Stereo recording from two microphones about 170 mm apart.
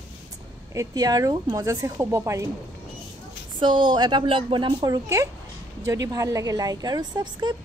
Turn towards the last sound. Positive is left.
turn(degrees=-25)  # may be behind; listen again after turning